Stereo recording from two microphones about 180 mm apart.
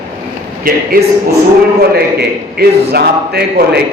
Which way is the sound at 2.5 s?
60° right (ahead or behind).